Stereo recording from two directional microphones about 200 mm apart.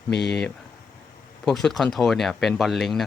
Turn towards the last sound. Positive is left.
turn(degrees=0)  # may be behind; listen again after turning